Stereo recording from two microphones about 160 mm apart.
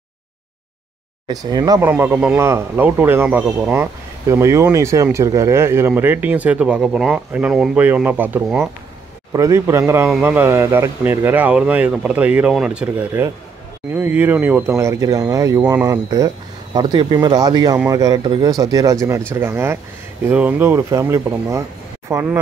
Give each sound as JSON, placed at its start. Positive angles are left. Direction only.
{"t": 1.2, "sound": "speech", "side_deg": -25}
{"t": 1.9, "sound": "speech", "side_deg": -15}